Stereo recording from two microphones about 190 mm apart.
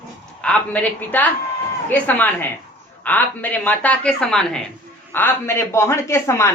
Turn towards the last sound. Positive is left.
turn(degrees=15)  # may be behind; listen again after turning